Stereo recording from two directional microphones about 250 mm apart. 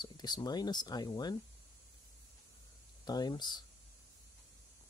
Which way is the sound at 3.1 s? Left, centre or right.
Centre.